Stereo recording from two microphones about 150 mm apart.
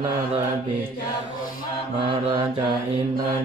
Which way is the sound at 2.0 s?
40° right (ahead or behind).